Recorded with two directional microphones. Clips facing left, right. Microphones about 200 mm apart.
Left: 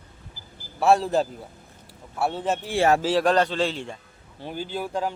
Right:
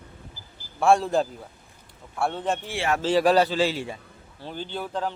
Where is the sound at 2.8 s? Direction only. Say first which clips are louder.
Left 9 dB; 40° left (ahead or behind).